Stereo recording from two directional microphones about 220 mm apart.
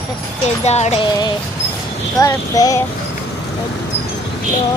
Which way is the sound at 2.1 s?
15° left (ahead or behind).